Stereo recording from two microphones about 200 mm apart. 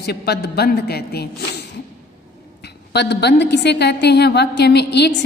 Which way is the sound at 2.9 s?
60° left (ahead or behind).